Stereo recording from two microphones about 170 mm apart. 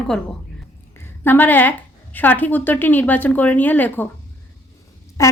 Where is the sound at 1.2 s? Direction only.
10° left (ahead or behind).